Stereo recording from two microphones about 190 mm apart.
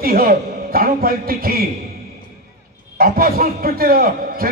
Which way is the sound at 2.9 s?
50° right (ahead or behind).